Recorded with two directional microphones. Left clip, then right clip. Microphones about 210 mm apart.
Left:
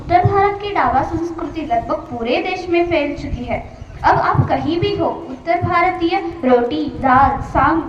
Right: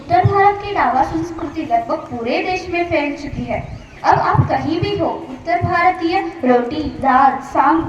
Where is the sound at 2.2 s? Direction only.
35° right (ahead or behind).